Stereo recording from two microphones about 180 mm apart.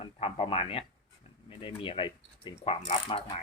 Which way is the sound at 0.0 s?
35° left (ahead or behind).